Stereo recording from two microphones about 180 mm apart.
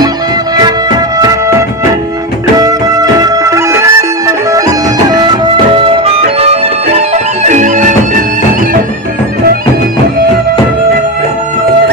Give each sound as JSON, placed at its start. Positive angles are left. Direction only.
{"t": 0.6, "sound": "music", "side_deg": -20}
{"t": 2.5, "sound": "music", "side_deg": -20}